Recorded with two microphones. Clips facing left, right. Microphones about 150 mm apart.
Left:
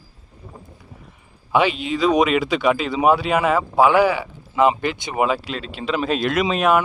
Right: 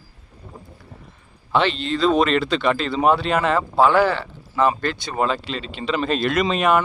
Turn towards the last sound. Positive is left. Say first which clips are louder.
# left 1 dB
turn(degrees=5)  # may be behind; listen again after turning